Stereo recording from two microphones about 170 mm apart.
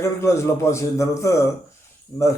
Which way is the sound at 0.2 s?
15° left (ahead or behind).